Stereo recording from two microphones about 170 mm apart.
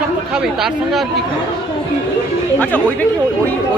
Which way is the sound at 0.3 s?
5° right (ahead or behind).